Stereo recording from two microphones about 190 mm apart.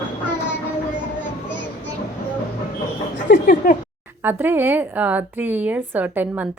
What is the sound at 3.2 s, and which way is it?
Speech, 45° left (ahead or behind).